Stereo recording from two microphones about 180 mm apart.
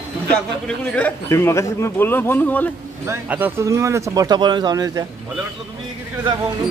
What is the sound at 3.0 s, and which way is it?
Speech, 10° right (ahead or behind).